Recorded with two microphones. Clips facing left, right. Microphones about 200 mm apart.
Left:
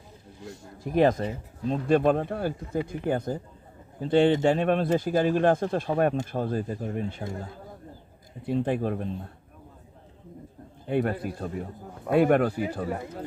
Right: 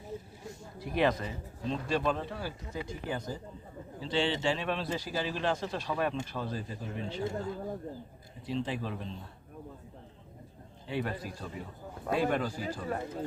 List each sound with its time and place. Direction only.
0.8 s a man's voice: 45° left (ahead or behind)
8.4 s a man's voice: 55° left (ahead or behind)
10.8 s a man's voice: 55° left (ahead or behind)